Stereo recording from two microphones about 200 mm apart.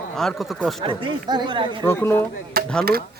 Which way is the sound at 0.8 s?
25° right (ahead or behind).